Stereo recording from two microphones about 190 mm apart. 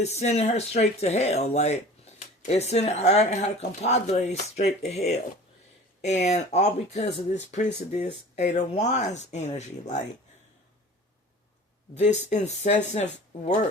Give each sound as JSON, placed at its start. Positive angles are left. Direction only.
{"t": 0.0, "sound": "speech", "side_deg": 35}
{"t": 12.3, "sound": "speech", "side_deg": 35}